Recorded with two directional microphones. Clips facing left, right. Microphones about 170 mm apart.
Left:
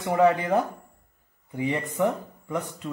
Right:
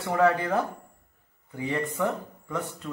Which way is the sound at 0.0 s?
15° left (ahead or behind).